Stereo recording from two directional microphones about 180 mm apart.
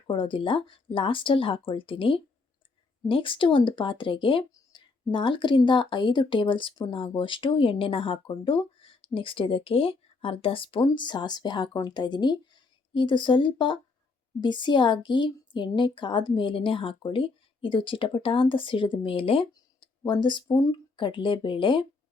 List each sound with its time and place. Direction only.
0.1 s speech: 30° left (ahead or behind)